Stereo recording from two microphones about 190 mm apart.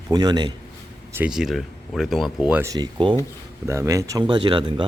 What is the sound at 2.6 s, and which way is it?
Speech, 20° right (ahead or behind).